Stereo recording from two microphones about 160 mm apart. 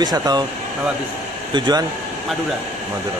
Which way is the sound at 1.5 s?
30° right (ahead or behind).